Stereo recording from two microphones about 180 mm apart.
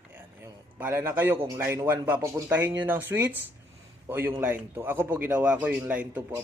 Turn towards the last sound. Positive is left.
turn(degrees=-10)  # may be behind; listen again after turning